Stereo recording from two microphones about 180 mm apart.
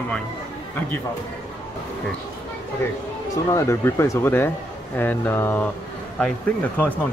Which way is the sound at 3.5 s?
15° left (ahead or behind).